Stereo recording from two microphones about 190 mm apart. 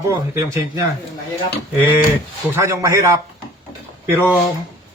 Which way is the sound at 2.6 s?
15° right (ahead or behind).